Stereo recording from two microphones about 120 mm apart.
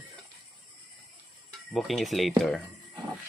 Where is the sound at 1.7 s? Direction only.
Centre (ahead or behind).